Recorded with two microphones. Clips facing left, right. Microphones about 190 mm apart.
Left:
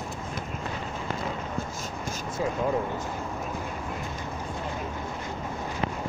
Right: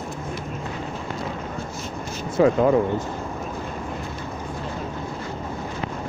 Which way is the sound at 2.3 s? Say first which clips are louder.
Right 11 dB; 85° right.